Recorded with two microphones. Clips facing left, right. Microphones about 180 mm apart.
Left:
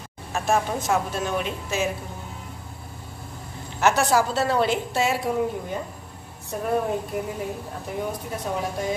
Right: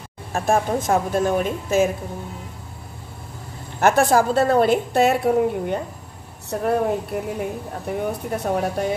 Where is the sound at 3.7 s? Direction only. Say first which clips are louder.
Right 4 dB; 50° right (ahead or behind).